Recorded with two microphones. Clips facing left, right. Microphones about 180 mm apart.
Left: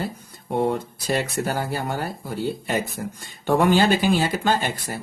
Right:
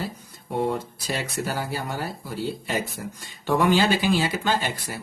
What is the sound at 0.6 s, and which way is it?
Speech, 55° left (ahead or behind).